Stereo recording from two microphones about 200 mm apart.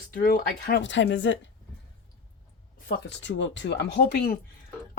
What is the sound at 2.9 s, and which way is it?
Speech, 60° left (ahead or behind).